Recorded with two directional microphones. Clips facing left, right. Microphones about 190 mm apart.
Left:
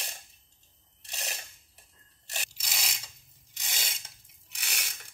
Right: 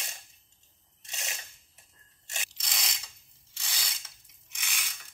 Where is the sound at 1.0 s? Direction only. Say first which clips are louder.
Left 2 dB; 35° left (ahead or behind).